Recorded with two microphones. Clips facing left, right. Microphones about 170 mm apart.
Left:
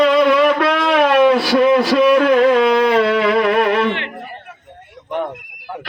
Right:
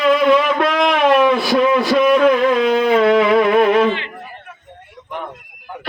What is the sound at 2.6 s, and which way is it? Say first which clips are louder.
Music: even; 70° left (ahead or behind).